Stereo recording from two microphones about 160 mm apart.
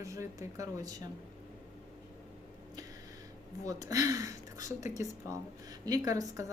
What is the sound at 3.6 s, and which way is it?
Speech, 20° right (ahead or behind).